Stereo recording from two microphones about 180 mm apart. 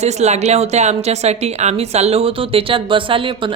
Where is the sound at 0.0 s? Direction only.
40° right (ahead or behind).